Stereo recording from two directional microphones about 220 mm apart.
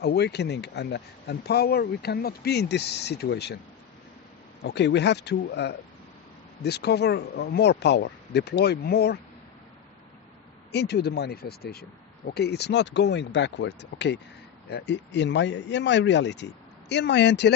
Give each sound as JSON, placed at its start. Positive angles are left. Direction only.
{"t": 0.0, "sound": "speech", "side_deg": 50}
{"t": 4.6, "sound": "speech", "side_deg": 50}
{"t": 10.7, "sound": "speech", "side_deg": 50}